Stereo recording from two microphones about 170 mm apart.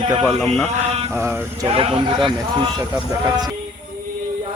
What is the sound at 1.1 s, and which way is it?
Mantra, 15° right (ahead or behind).